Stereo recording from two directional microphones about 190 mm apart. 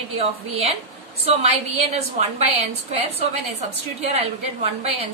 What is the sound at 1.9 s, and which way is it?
A woman's voice, 35° right (ahead or behind).